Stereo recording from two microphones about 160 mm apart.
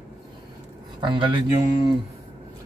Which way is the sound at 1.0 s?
30° right (ahead or behind).